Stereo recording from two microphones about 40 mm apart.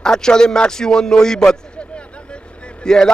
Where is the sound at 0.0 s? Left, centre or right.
Centre.